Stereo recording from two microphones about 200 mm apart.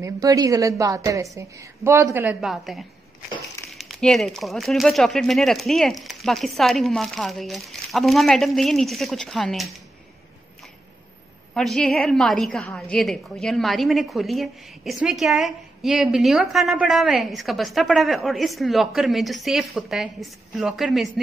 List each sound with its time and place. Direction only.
0.0 s a woman's voice: 15° right (ahead or behind); by 9.8 s centre (ahead or behind)
11.5 s a woman's voice: centre (ahead or behind)